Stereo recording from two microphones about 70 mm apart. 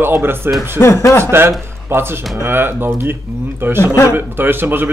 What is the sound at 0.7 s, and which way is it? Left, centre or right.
Speech, left.